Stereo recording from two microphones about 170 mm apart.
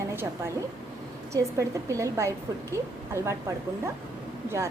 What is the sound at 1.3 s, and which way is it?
A woman's voice, 20° right (ahead or behind).